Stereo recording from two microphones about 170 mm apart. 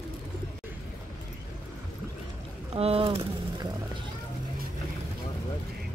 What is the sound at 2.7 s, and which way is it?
Speech, 35° right (ahead or behind).